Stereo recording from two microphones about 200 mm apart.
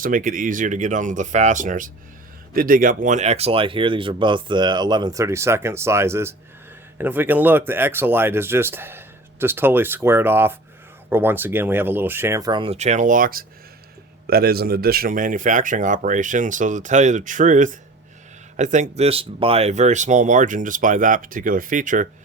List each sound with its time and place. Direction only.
0.0 s speech: 45° right (ahead or behind)